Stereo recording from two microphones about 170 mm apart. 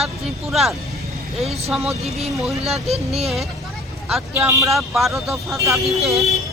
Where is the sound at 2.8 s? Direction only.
35° right (ahead or behind).